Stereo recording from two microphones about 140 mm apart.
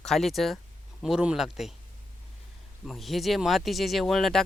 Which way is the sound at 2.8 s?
Centre (ahead or behind).